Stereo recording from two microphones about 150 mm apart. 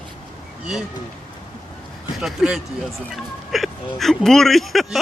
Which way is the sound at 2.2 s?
5° right (ahead or behind).